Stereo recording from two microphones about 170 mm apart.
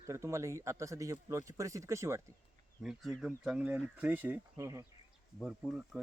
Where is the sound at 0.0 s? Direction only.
15° right (ahead or behind).